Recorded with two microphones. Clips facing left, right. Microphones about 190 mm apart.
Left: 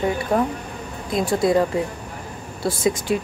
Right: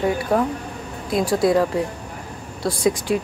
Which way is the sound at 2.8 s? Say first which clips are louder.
Right 1 dB; centre (ahead or behind).